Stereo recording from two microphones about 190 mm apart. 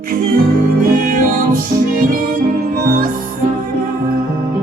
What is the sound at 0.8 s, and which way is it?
Music, 45° right (ahead or behind).